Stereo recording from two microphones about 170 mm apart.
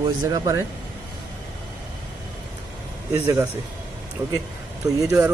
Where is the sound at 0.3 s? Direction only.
15° right (ahead or behind).